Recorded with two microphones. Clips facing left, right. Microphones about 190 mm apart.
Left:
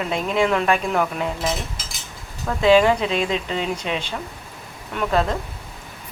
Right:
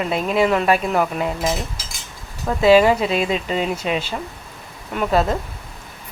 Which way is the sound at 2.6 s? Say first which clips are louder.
Right 2 dB; 5° right (ahead or behind).